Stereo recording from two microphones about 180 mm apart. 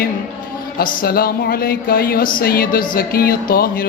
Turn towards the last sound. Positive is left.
turn(degrees=55)  # may be behind; listen again after turning